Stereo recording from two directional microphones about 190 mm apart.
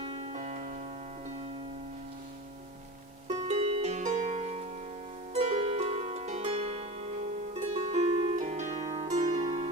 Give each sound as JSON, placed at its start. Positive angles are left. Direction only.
{"t": 0.0, "sound": "music", "side_deg": -30}
{"t": 3.2, "sound": "music", "side_deg": -35}
{"t": 5.3, "sound": "harp", "side_deg": -35}
{"t": 7.5, "sound": "music", "side_deg": -35}
{"t": 8.4, "sound": "harp", "side_deg": -40}
{"t": 9.4, "sound": "music", "side_deg": -20}